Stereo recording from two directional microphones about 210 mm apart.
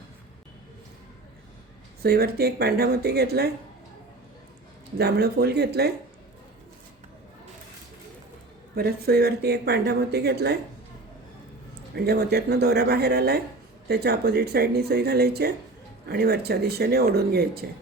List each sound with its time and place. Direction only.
2.0 s speech: 50° right (ahead or behind)
4.9 s speech: 50° right (ahead or behind)
8.7 s speech: 50° right (ahead or behind)
11.9 s speech: 50° right (ahead or behind)